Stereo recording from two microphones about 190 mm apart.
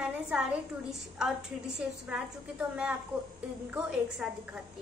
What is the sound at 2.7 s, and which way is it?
A woman's voice, 5° right (ahead or behind).